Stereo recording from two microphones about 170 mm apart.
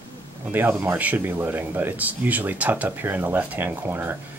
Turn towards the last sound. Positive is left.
turn(degrees=-10)  # may be behind; listen again after turning